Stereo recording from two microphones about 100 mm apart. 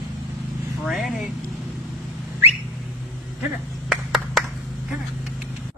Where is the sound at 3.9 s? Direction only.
Centre (ahead or behind).